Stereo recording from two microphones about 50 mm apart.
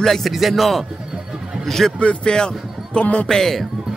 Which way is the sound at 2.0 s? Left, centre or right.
Left.